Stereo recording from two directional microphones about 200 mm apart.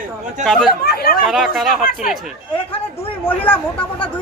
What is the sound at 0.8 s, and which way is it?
Speech, 50° left (ahead or behind).